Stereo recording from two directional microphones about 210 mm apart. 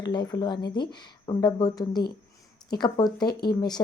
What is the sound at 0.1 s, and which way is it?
A woman's voice, 20° left (ahead or behind).